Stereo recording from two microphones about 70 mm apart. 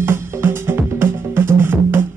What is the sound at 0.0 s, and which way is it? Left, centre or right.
Music, right.